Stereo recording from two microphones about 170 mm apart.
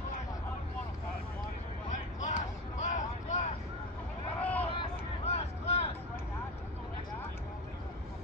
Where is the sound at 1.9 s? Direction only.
45° left (ahead or behind).